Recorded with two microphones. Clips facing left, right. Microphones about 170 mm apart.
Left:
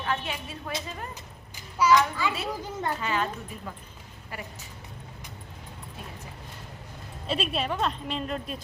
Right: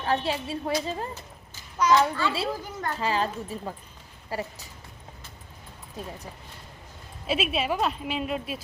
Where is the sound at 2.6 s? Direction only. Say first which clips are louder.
Left 2 dB; 20° left (ahead or behind).